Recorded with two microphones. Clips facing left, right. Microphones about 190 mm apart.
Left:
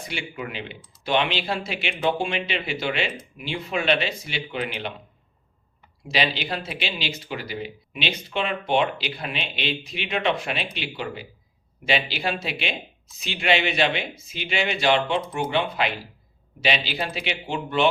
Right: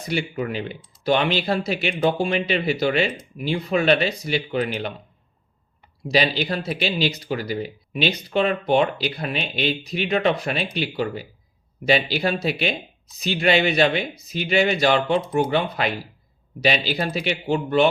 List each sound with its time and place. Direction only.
0.0 s speech: 40° right (ahead or behind)
6.0 s speech: 40° right (ahead or behind)